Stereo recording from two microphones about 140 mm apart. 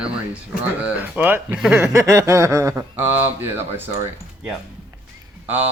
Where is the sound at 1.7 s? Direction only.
20° right (ahead or behind).